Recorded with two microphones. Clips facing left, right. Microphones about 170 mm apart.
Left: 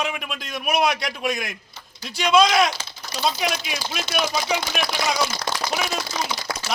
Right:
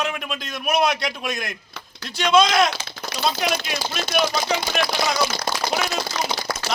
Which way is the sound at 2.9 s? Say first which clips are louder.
Right 6 dB; 70° right (ahead or behind).